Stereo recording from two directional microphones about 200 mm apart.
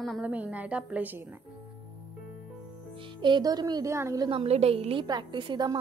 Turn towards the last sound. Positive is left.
turn(degrees=-20)  # may be behind; listen again after turning